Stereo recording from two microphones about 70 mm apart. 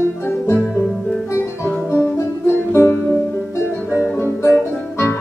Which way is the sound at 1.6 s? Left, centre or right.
Left.